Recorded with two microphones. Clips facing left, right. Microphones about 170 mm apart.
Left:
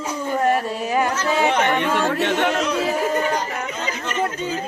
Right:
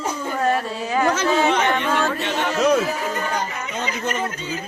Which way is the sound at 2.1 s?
60° left (ahead or behind).